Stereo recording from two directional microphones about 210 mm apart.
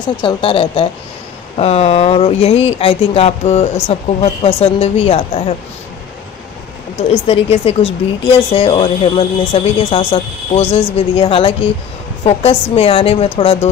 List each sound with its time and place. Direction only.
0.2 s speech: 25° left (ahead or behind)
7.0 s speech: 30° left (ahead or behind)